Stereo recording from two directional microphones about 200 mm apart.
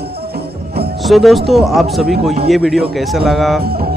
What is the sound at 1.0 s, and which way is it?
Speech, centre (ahead or behind).